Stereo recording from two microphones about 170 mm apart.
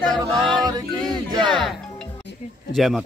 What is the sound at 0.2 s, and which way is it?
Music, 20° right (ahead or behind).